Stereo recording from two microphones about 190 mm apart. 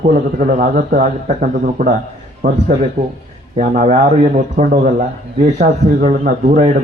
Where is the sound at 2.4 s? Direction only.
55° right (ahead or behind).